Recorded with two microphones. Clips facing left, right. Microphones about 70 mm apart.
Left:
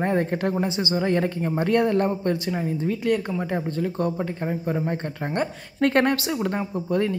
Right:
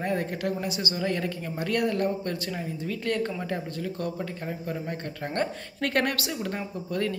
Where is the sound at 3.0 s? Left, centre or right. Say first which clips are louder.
Left 3 dB; centre.